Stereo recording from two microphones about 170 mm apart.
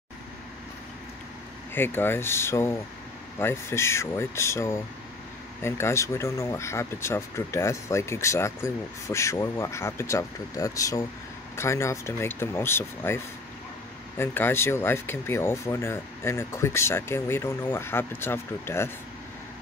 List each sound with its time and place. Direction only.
1.7 s speech: 10° left (ahead or behind)